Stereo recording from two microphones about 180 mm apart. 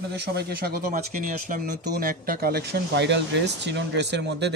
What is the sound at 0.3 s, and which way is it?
Speech, 60° right (ahead or behind).